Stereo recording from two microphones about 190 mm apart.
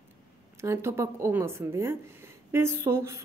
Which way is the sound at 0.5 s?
15° right (ahead or behind).